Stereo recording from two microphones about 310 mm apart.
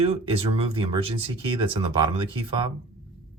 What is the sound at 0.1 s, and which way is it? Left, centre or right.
Speech, centre.